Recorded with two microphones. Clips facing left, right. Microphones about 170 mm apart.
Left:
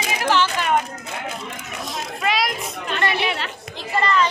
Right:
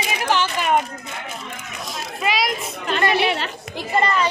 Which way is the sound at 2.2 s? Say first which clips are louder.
Even; centre (ahead or behind).